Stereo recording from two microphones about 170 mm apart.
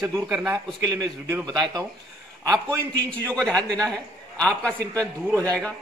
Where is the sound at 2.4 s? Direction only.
15° right (ahead or behind).